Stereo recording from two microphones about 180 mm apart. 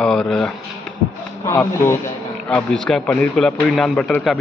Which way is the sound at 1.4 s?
15° left (ahead or behind).